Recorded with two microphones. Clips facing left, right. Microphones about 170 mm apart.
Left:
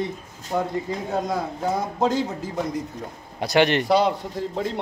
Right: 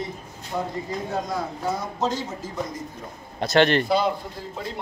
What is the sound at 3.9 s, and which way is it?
Speech, 75° left (ahead or behind).